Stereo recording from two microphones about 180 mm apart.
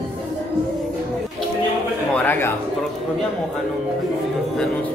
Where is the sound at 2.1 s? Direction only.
10° left (ahead or behind).